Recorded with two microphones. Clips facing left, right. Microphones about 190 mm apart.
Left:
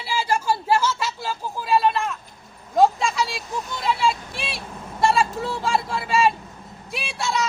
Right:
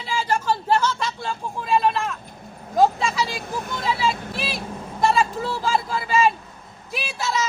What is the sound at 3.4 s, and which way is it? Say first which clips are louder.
Speech: right 1 dB; 55° right (ahead or behind).